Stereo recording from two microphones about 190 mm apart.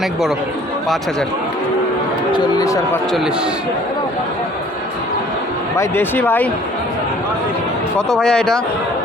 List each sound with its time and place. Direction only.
2.3 s a sound: 20° left (ahead or behind)
5.7 s speech: 15° left (ahead or behind)
7.9 s speech: 5° left (ahead or behind)